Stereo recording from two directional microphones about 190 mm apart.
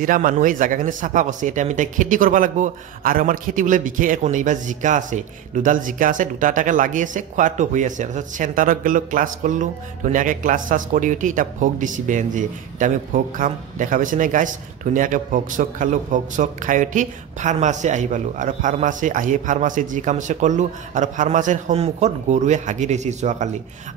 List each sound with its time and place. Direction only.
0.0 s a man's voice: 45° right (ahead or behind)